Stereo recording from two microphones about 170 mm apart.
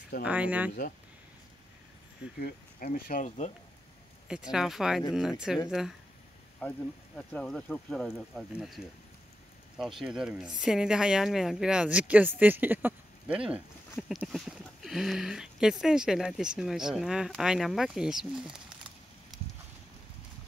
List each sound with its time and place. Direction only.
0.2 s speech: 10° right (ahead or behind)
2.4 s speech: 55° left (ahead or behind)
4.3 s speech: 5° right (ahead or behind)
6.6 s speech: 10° left (ahead or behind)